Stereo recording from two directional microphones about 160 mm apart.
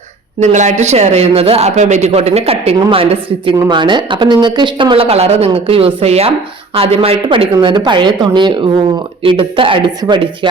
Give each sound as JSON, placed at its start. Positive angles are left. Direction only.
{"t": 0.3, "sound": "speech", "side_deg": -50}